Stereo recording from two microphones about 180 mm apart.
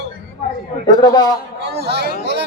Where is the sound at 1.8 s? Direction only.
65° right (ahead or behind).